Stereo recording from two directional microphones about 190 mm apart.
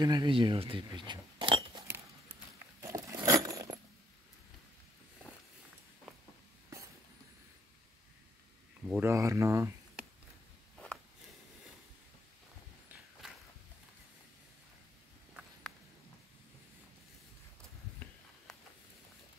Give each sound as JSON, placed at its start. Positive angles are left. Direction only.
{"t": 0.0, "sound": "speech", "side_deg": -20}
{"t": 2.8, "sound": "coin", "side_deg": -15}
{"t": 8.8, "sound": "speech", "side_deg": -5}
{"t": 9.1, "sound": "speech", "side_deg": -15}